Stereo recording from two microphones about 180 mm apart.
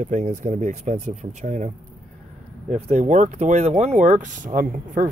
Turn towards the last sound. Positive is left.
turn(degrees=-50)  # may be behind; listen again after turning